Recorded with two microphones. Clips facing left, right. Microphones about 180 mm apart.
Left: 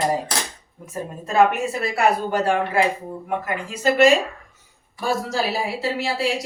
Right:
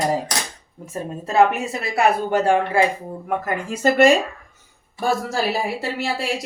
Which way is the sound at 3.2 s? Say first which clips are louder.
Right 3 dB; 45° right (ahead or behind).